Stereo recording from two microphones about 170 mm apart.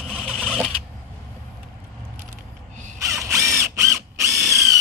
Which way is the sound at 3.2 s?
15° right (ahead or behind).